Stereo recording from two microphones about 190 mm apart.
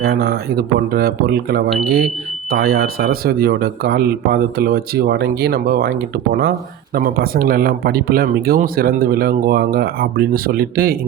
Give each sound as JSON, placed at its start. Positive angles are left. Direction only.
{"t": 0.0, "sound": "speech", "side_deg": -55}
{"t": 6.9, "sound": "speech", "side_deg": -50}